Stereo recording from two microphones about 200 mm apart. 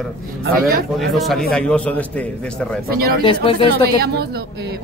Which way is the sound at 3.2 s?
25° left (ahead or behind).